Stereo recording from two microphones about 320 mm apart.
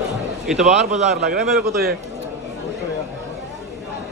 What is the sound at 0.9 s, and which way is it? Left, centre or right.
Speech, right.